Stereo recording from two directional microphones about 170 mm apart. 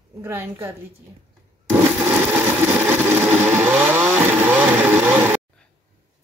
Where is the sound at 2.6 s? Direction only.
15° right (ahead or behind).